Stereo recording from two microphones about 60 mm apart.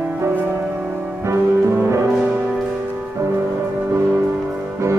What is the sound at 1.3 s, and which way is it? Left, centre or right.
Music, right.